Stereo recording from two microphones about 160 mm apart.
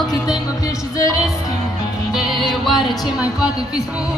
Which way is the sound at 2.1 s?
Centre (ahead or behind).